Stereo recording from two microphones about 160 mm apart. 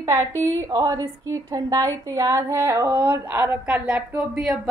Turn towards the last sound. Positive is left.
turn(degrees=-5)  # may be behind; listen again after turning